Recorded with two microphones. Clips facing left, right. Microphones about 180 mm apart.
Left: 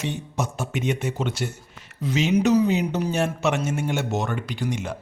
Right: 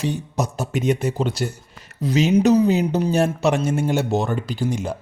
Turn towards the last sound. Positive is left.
turn(degrees=-35)  # may be behind; listen again after turning